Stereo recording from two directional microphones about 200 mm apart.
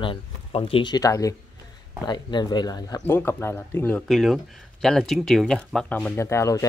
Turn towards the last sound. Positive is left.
turn(degrees=15)  # may be behind; listen again after turning